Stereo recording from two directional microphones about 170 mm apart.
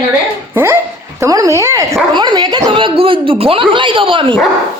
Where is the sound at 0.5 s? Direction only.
15° right (ahead or behind).